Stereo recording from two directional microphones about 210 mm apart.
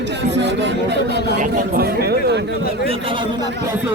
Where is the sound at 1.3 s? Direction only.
45° right (ahead or behind).